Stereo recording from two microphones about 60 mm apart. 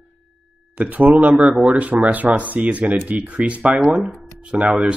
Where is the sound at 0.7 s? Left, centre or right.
Right.